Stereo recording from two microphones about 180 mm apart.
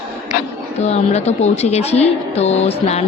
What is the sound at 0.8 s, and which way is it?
A woman's voice, 35° left (ahead or behind).